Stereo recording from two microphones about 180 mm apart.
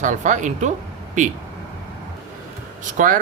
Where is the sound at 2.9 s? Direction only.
50° right (ahead or behind).